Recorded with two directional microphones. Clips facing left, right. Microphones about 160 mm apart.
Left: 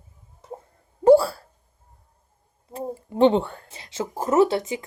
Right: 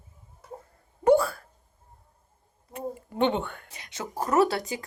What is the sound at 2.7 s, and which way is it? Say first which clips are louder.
Speech: left 4 dB; 30° left (ahead or behind).